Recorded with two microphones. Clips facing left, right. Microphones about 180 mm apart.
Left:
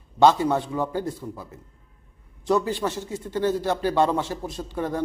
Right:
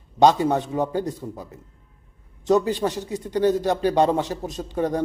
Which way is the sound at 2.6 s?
15° right (ahead or behind).